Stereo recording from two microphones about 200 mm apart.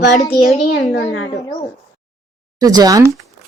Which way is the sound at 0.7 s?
60° left (ahead or behind).